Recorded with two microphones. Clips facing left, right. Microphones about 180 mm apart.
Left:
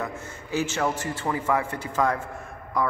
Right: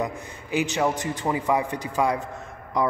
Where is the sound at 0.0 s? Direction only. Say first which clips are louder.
Right 3 dB; 15° right (ahead or behind).